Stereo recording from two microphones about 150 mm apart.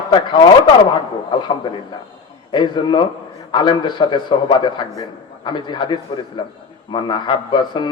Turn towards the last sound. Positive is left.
turn(degrees=30)  # may be behind; listen again after turning